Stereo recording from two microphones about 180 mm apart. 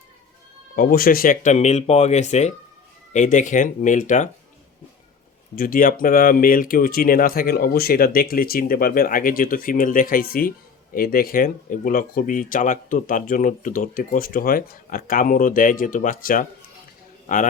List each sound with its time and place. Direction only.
0.8 s speech: 55° left (ahead or behind)
5.5 s speech: 50° left (ahead or behind)